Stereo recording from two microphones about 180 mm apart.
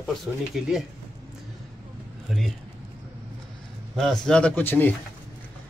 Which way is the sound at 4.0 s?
5° left (ahead or behind).